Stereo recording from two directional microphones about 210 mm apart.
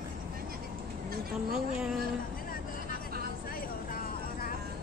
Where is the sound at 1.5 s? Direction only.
Centre (ahead or behind).